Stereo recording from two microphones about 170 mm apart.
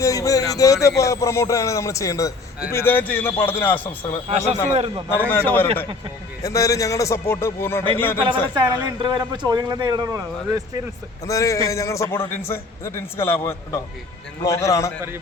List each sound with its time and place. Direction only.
0.0 s a man's voice: 20° left (ahead or behind)
4.3 s a man's voice: 40° right (ahead or behind)
5.3 s a man's voice: 10° left (ahead or behind)
8.3 s a man's voice: 25° right (ahead or behind)
11.3 s a man's voice: 20° left (ahead or behind)